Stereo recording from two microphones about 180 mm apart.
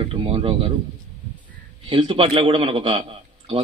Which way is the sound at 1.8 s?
30° right (ahead or behind).